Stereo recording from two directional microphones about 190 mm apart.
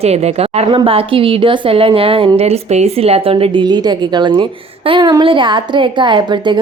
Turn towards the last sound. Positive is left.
turn(degrees=-25)  # may be behind; listen again after turning